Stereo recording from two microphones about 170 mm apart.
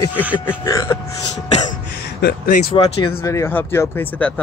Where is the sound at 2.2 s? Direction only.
60° left (ahead or behind).